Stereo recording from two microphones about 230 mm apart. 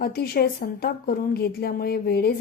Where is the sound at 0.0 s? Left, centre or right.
Left.